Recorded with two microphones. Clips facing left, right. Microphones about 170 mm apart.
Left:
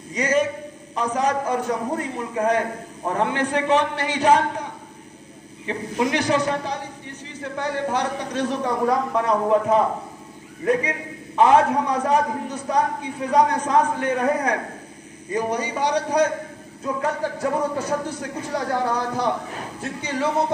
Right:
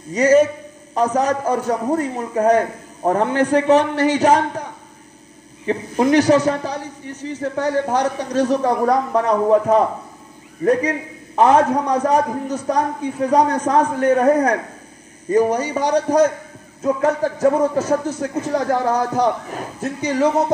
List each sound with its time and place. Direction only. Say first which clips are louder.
0.1 s a man's voice: right 8 dB; 40° right (ahead or behind)
5.7 s a man's voice: right 6 dB; 40° right (ahead or behind)
10.6 s a man's voice: right 5 dB; 40° right (ahead or behind)
18.1 s speech: right 7 dB; 20° right (ahead or behind)
18.5 s a man's voice: right 4 dB; 40° right (ahead or behind)